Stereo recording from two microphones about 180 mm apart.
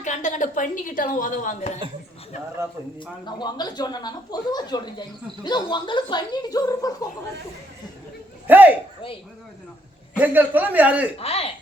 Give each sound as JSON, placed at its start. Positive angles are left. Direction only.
{"t": 0.0, "sound": "a woman's voice", "side_deg": 40}
{"t": 3.2, "sound": "speech", "side_deg": 25}
{"t": 8.4, "sound": "a sound", "side_deg": -10}
{"t": 10.2, "sound": "a man's voice", "side_deg": -10}
{"t": 11.2, "sound": "speech", "side_deg": 35}